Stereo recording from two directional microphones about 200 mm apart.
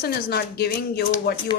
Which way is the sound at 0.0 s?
50° left (ahead or behind).